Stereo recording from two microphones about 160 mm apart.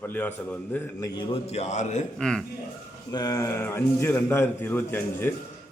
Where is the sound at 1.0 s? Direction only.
30° left (ahead or behind).